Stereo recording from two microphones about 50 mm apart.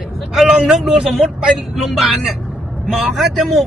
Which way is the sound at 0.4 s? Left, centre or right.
Centre.